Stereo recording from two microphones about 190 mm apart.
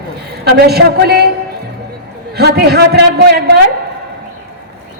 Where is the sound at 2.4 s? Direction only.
60° right (ahead or behind).